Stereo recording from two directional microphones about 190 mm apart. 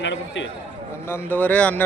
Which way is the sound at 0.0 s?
75° left (ahead or behind).